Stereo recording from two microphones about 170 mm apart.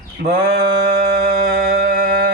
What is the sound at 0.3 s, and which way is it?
Speech, 60° right (ahead or behind).